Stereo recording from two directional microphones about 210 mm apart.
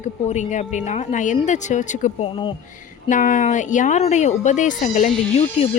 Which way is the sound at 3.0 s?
40° left (ahead or behind).